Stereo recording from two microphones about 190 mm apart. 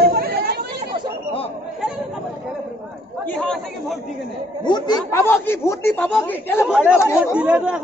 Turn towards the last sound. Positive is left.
turn(degrees=-5)  # may be behind; listen again after turning